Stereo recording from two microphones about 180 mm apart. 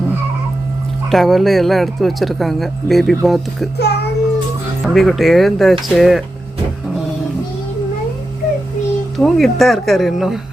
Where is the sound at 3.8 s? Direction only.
65° left (ahead or behind).